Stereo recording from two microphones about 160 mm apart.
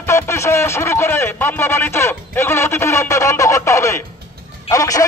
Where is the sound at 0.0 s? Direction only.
15° left (ahead or behind).